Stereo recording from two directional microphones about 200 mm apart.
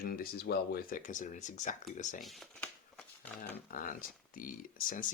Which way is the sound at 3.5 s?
45° left (ahead or behind).